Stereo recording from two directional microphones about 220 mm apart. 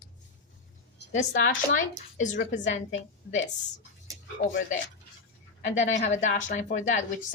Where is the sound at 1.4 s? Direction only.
35° left (ahead or behind).